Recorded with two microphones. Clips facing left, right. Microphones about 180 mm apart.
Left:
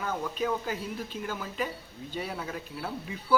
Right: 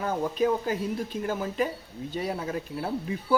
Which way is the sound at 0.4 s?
40° right (ahead or behind).